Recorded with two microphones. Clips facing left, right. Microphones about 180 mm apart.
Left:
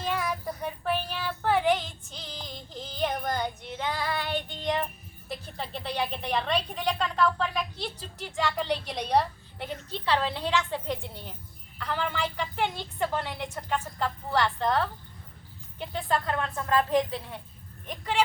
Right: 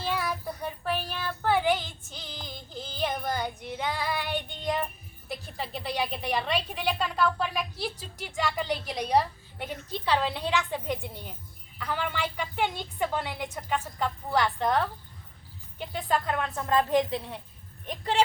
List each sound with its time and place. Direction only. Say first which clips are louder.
0.0 s child singing: left 1 dB; 5° right (ahead or behind)
5.5 s speech: even; 5° right (ahead or behind)
15.9 s speech: even; 10° right (ahead or behind)